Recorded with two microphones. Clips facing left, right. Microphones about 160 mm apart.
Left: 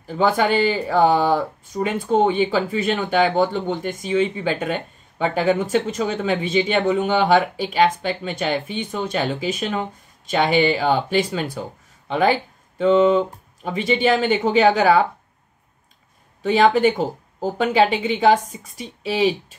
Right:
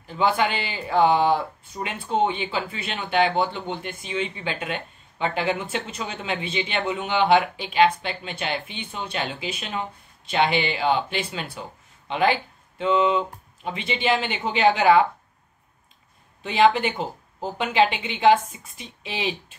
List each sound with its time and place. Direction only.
0.0 s speech: 40° left (ahead or behind)
16.4 s speech: 40° left (ahead or behind)